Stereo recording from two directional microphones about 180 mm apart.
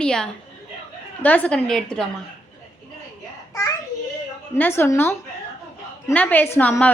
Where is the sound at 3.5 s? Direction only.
15° left (ahead or behind).